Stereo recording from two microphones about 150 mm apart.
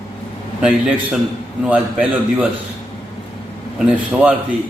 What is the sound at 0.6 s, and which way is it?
A man's voice, 5° right (ahead or behind).